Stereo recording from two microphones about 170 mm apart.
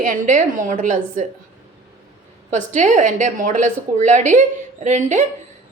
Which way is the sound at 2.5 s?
45° right (ahead or behind).